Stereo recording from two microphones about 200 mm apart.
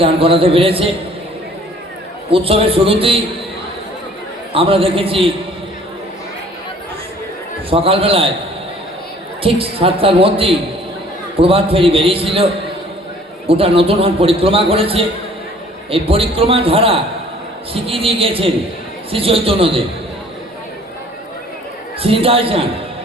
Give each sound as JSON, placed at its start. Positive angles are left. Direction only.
{"t": 0.0, "sound": "speech", "side_deg": -25}
{"t": 2.3, "sound": "a man's voice", "side_deg": -30}
{"t": 4.5, "sound": "a man's voice", "side_deg": -25}
{"t": 7.7, "sound": "a man's voice", "side_deg": -25}
{"t": 9.4, "sound": "a man's voice", "side_deg": -25}
{"t": 13.5, "sound": "a man's voice", "side_deg": -30}
{"t": 22.0, "sound": "a man's voice", "side_deg": -25}